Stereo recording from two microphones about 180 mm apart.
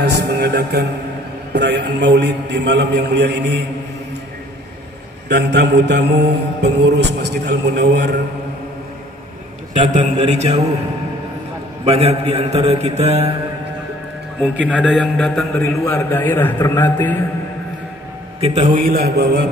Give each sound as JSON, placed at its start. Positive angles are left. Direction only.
{"t": 0.0, "sound": "music", "side_deg": -65}
{"t": 1.5, "sound": "mantra", "side_deg": -70}
{"t": 5.3, "sound": "mantra", "side_deg": -70}
{"t": 9.8, "sound": "a man's voice", "side_deg": -45}
{"t": 11.8, "sound": "a man's voice", "side_deg": -35}
{"t": 14.7, "sound": "a man's voice", "side_deg": 5}
{"t": 15.6, "sound": "a man's voice", "side_deg": 15}
{"t": 18.4, "sound": "a man's voice", "side_deg": -35}
{"t": 18.7, "sound": "a man's voice", "side_deg": -55}